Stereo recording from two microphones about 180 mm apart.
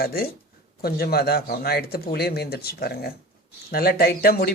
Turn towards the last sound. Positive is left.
turn(degrees=60)  # may be behind; listen again after turning